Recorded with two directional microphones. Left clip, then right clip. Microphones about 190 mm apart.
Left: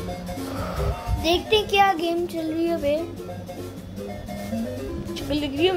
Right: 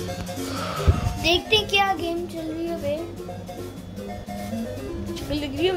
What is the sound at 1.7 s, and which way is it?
Child singing, 40° left (ahead or behind).